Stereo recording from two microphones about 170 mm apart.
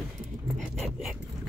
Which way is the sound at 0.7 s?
Centre (ahead or behind).